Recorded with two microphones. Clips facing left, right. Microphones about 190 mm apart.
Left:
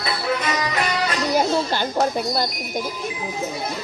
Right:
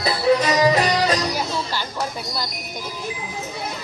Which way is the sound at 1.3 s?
50° left (ahead or behind).